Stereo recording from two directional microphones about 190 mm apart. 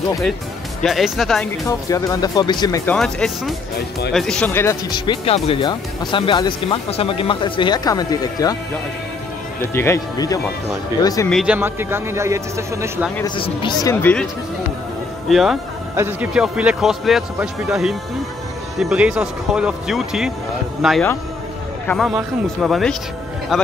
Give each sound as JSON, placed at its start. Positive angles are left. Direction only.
{"t": 0.8, "sound": "speech", "side_deg": 0}
{"t": 1.7, "sound": "speech", "side_deg": 15}
{"t": 4.9, "sound": "speech", "side_deg": 25}
{"t": 9.8, "sound": "speech", "side_deg": 15}
{"t": 11.2, "sound": "a man's voice", "side_deg": 0}
{"t": 13.2, "sound": "speech", "side_deg": 25}
{"t": 15.2, "sound": "speech", "side_deg": 0}